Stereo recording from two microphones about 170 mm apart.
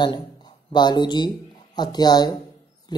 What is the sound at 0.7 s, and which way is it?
A woman's voice, 25° left (ahead or behind).